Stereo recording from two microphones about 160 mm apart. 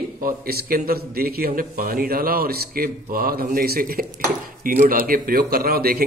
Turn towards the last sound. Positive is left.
turn(degrees=-70)  # may be behind; listen again after turning